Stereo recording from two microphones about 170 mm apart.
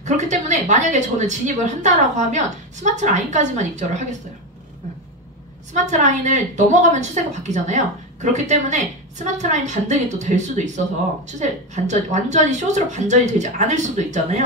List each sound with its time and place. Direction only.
0.0 s a woman's voice: 45° right (ahead or behind)
5.7 s a woman's voice: 45° right (ahead or behind)